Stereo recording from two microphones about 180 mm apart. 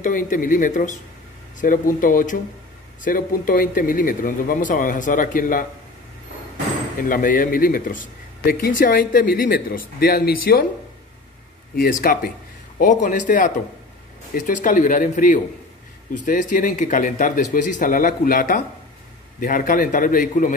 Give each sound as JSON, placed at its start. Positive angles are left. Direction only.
{"t": 0.0, "sound": "speech", "side_deg": 50}
{"t": 7.0, "sound": "speech", "side_deg": 50}
{"t": 11.7, "sound": "speech", "side_deg": 55}